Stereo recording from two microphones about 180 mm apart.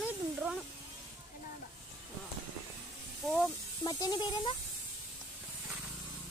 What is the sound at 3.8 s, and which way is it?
Speech, 20° left (ahead or behind).